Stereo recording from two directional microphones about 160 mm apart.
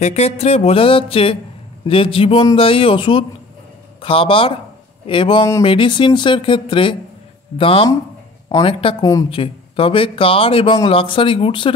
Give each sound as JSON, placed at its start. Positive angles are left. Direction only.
{"t": 0.0, "sound": "a man's voice", "side_deg": 40}
{"t": 9.3, "sound": "a man's voice", "side_deg": 35}